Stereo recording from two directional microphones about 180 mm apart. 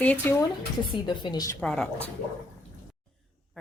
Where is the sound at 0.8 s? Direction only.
25° left (ahead or behind).